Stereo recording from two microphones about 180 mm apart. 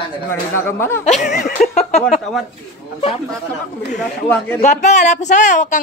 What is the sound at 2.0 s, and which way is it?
Speech, centre (ahead or behind).